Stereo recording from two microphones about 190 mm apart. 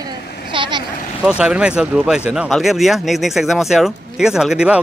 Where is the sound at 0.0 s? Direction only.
25° right (ahead or behind).